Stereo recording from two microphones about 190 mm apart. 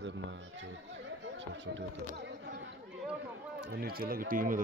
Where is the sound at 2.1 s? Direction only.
60° right (ahead or behind).